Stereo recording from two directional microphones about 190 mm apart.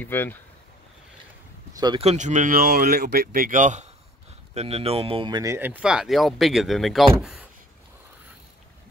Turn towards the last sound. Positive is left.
turn(degrees=0)  # may be behind; listen again after turning